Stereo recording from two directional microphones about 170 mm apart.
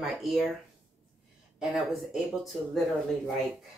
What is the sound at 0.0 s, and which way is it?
Speech, 5° right (ahead or behind).